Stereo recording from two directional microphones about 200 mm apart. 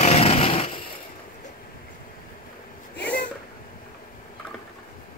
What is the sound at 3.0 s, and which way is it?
Cat, 5° left (ahead or behind).